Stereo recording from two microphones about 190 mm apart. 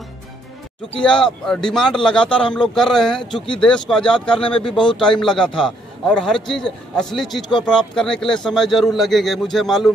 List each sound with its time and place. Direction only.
1.0 s a man's voice: 5° left (ahead or behind)
4.5 s speech: 25° left (ahead or behind)
5.0 s a man's voice: 5° left (ahead or behind)